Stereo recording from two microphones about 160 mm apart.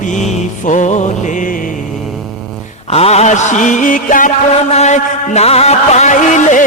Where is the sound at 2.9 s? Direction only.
40° left (ahead or behind).